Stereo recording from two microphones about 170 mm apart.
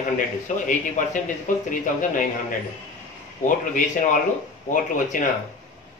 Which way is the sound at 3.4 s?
50° left (ahead or behind).